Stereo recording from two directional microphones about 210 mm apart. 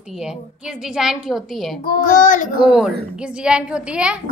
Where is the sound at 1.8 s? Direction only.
40° left (ahead or behind).